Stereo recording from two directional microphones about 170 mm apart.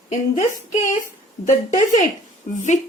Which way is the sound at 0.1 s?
45° left (ahead or behind).